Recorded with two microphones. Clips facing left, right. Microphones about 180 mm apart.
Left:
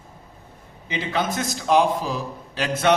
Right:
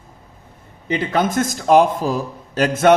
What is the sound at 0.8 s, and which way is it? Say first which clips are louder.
A man's voice: right 6 dB; 50° right (ahead or behind).